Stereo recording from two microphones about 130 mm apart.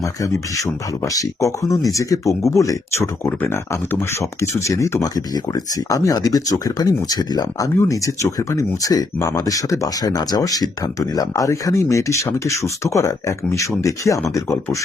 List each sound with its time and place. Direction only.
0.0 s speech: 25° left (ahead or behind)